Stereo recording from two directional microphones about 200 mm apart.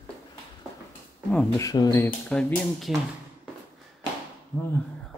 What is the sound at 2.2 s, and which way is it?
Speech, 5° left (ahead or behind).